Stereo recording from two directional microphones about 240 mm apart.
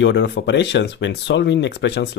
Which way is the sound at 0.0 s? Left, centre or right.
Left.